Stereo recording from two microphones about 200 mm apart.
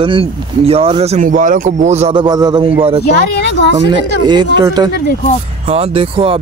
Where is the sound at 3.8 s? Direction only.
20° right (ahead or behind).